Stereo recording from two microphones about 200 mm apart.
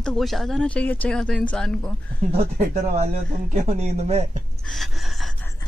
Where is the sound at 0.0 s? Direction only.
Centre (ahead or behind).